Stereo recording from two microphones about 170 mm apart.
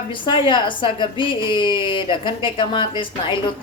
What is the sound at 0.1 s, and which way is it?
A woman's voice, 30° left (ahead or behind).